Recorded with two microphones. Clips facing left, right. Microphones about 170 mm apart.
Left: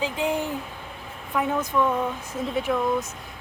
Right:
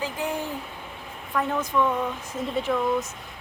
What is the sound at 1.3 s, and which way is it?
A woman's voice, 5° left (ahead or behind).